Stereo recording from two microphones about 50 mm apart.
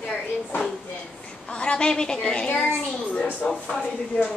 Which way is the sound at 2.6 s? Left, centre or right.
Left.